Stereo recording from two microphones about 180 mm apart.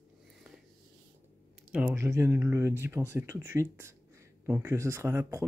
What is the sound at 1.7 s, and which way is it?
Speech, 10° right (ahead or behind).